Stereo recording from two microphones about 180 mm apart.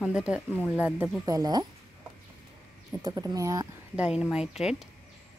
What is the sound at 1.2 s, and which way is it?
Speech, 20° right (ahead or behind).